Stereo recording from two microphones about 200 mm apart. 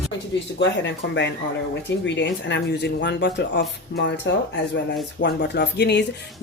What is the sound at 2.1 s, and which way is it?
Speech, 60° left (ahead or behind).